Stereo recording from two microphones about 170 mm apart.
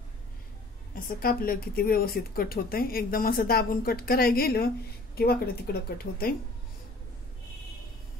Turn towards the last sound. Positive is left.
turn(degrees=60)  # may be behind; listen again after turning